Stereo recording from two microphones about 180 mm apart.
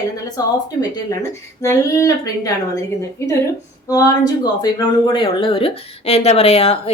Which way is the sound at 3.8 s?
20° left (ahead or behind).